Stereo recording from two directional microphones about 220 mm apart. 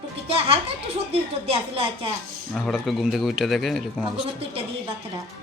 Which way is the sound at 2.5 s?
Centre (ahead or behind).